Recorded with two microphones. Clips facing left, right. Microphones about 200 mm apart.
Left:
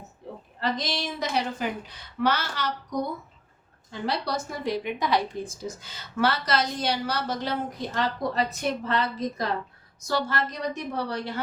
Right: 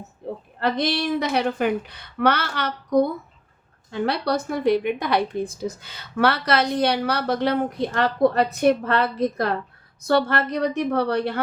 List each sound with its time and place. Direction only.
0.6 s a woman's voice: 60° right (ahead or behind)